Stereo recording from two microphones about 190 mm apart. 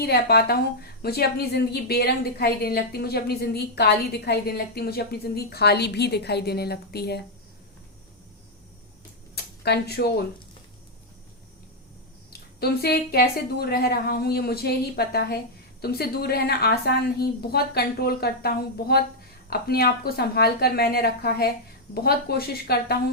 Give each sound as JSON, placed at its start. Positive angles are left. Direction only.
{"t": 0.0, "sound": "a woman's voice", "side_deg": 55}
{"t": 9.3, "sound": "speech", "side_deg": 60}
{"t": 12.3, "sound": "a woman's voice", "side_deg": 55}